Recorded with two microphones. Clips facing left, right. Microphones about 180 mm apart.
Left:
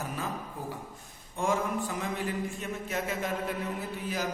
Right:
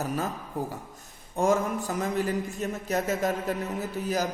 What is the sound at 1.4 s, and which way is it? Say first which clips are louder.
A man's voice: right 5 dB; 40° right (ahead or behind).